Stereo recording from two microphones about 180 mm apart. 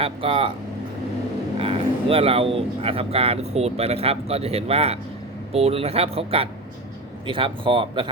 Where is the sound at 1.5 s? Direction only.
30° right (ahead or behind).